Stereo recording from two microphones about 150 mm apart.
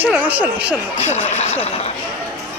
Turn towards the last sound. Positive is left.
turn(degrees=45)  # may be behind; listen again after turning